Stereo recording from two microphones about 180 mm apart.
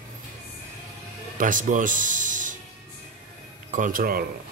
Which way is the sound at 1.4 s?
45° right (ahead or behind).